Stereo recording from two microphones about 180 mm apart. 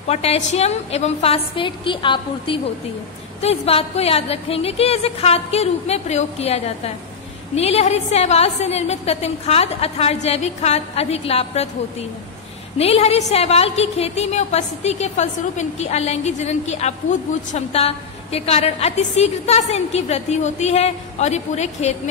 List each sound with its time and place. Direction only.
0.1 s a woman's voice: 35° left (ahead or behind)